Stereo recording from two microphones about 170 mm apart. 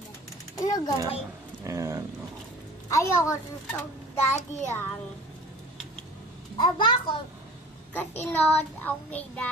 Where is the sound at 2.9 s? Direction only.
20° left (ahead or behind).